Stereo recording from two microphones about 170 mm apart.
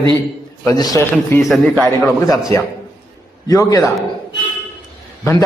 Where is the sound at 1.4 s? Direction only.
Centre (ahead or behind).